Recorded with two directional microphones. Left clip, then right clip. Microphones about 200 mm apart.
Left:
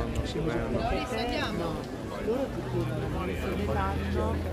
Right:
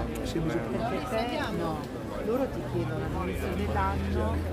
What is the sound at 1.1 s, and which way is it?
Speech, 40° right (ahead or behind).